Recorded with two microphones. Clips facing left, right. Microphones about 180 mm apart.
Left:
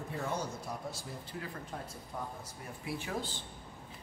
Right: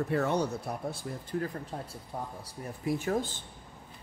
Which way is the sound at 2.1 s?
30° right (ahead or behind).